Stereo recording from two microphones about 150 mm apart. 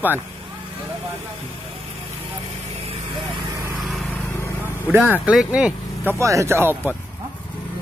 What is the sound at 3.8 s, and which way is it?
Lawn mower, centre (ahead or behind).